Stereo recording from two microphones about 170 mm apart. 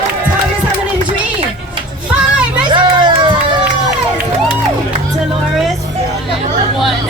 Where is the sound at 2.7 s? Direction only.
30° right (ahead or behind).